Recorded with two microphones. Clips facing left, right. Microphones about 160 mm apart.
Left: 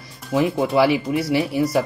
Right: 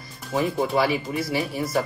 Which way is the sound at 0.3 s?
75° left (ahead or behind).